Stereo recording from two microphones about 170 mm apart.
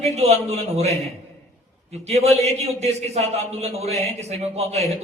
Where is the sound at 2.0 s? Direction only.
40° right (ahead or behind).